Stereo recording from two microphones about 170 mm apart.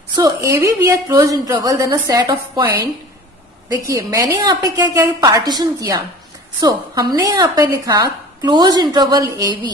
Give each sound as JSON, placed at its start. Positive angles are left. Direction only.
{"t": 0.2, "sound": "speech", "side_deg": -15}
{"t": 3.9, "sound": "speech", "side_deg": -20}